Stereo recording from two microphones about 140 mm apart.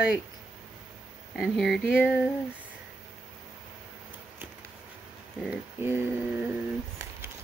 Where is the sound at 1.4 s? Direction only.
Centre (ahead or behind).